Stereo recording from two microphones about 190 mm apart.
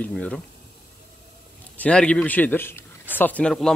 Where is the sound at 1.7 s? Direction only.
5° left (ahead or behind).